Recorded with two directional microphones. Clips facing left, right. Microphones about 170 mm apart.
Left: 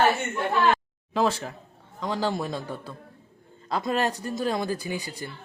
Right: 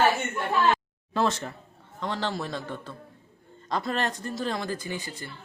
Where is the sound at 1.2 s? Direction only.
10° left (ahead or behind).